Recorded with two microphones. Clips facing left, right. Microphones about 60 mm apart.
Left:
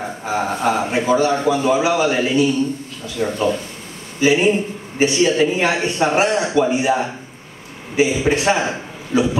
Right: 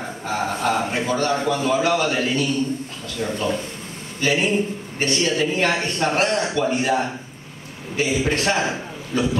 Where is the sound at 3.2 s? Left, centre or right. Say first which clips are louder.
Left 5 dB; left.